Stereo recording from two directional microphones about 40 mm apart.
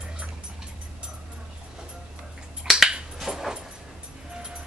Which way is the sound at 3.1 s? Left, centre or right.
Centre.